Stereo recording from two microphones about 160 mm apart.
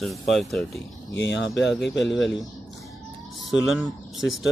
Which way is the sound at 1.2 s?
90° left.